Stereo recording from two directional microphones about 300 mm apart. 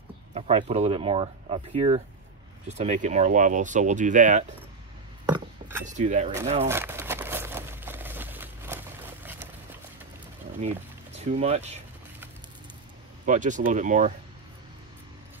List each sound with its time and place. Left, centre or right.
0.3 s speech: centre
5.2 s a sound: centre
5.9 s speech: right
6.7 s crumpling: centre
11.1 s speech: right
13.2 s speech: right